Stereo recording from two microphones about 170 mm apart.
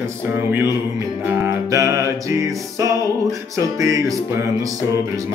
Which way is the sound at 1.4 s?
15° right (ahead or behind).